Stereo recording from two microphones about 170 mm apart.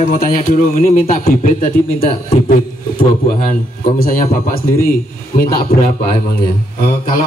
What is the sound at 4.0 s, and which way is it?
Speech, 55° left (ahead or behind).